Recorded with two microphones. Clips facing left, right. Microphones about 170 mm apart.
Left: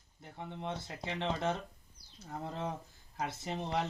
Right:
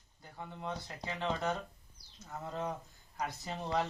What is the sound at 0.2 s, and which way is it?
Speech, 25° left (ahead or behind).